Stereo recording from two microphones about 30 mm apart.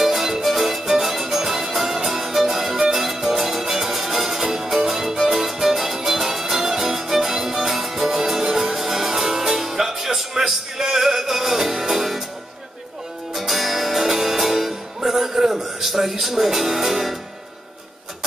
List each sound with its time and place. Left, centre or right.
0.0 s music: centre
13.3 s music: centre